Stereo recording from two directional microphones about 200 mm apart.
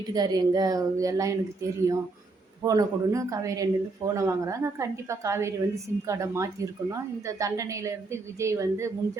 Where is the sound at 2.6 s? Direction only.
20° right (ahead or behind).